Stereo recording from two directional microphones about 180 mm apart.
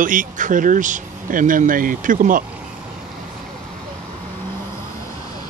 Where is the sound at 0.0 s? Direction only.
50° right (ahead or behind).